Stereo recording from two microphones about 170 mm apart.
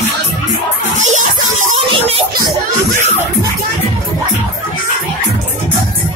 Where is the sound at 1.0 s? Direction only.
45° right (ahead or behind).